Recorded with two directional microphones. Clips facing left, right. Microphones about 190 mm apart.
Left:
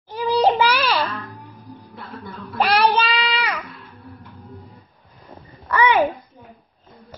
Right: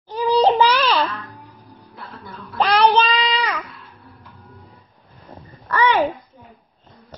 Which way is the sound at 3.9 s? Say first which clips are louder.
Left 5 dB; centre (ahead or behind).